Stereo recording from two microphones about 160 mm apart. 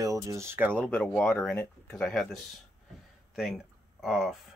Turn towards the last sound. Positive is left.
turn(degrees=0)  # may be behind; listen again after turning